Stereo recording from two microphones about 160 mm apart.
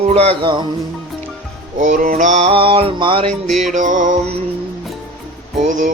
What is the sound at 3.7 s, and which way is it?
Music, 55° right (ahead or behind).